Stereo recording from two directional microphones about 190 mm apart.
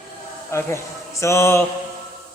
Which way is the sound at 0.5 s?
15° left (ahead or behind).